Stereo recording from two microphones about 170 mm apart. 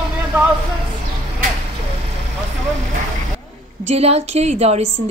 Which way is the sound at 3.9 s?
40° right (ahead or behind).